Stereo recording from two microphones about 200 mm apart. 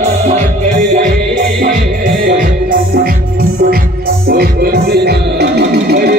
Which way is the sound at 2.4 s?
45° right (ahead or behind).